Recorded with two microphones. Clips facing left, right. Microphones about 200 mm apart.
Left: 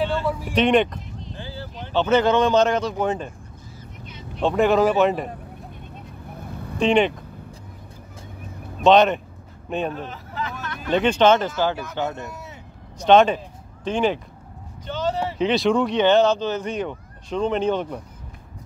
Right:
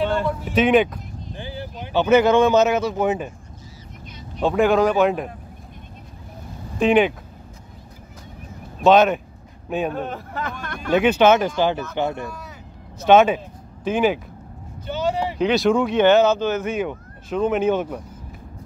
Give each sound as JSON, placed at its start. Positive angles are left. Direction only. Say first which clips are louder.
{"t": 0.3, "sound": "speech", "louder": "even", "side_deg": 10}
{"t": 0.6, "sound": "speech", "louder": "right 2 dB", "side_deg": -5}
{"t": 1.3, "sound": "a sound", "louder": "right 3 dB", "side_deg": -15}
{"t": 3.0, "sound": "speech", "louder": "right 2 dB", "side_deg": -10}
{"t": 4.4, "sound": "speech", "louder": "right 1 dB", "side_deg": 0}
{"t": 6.8, "sound": "speech", "louder": "right 2 dB", "side_deg": -5}
{"t": 8.8, "sound": "a man's voice", "louder": "right 1 dB", "side_deg": -5}
{"t": 9.9, "sound": "speech", "louder": "right 4 dB", "side_deg": -50}
{"t": 10.9, "sound": "speech", "louder": "right 2 dB", "side_deg": -10}
{"t": 12.2, "sound": "speech", "louder": "right 3 dB", "side_deg": 20}
{"t": 13.0, "sound": "speech", "louder": "right 1 dB", "side_deg": -5}
{"t": 14.9, "sound": "vehicle", "louder": "right 2 dB", "side_deg": -10}
{"t": 15.3, "sound": "speech", "louder": "right 1 dB", "side_deg": 0}